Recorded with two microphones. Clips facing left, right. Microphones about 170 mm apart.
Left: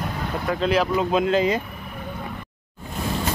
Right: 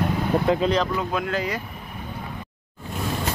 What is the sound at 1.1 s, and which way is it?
Speech, 20° left (ahead or behind).